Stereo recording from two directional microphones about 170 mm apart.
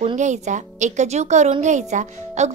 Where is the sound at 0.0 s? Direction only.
45° right (ahead or behind).